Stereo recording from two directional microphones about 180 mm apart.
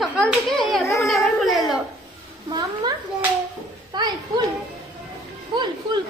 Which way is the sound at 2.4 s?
25° right (ahead or behind).